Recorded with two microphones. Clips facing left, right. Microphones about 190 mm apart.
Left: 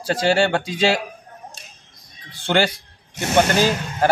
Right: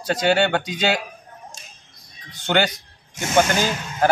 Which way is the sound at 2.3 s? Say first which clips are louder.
Left 1 dB; 30° left (ahead or behind).